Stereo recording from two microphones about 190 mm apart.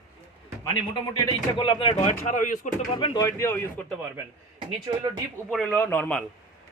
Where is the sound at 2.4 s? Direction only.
45° left (ahead or behind).